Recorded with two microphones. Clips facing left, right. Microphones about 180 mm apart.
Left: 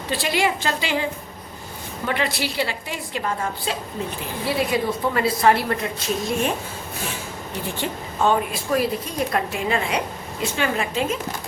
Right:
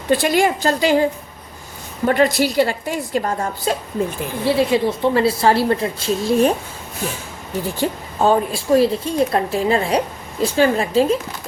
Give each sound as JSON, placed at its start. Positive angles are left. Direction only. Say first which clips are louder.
{"t": 0.1, "sound": "a woman's voice", "louder": "right 7 dB", "side_deg": -45}
{"t": 2.0, "sound": "a woman's voice", "louder": "right 9 dB", "side_deg": -45}
{"t": 4.4, "sound": "a woman's voice", "louder": "right 6 dB", "side_deg": -25}
{"t": 7.8, "sound": "a woman's voice", "louder": "right 4 dB", "side_deg": -35}